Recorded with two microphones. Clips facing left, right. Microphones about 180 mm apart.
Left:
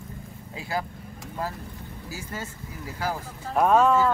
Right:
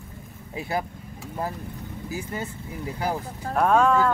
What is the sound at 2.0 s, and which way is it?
Speech, 20° right (ahead or behind).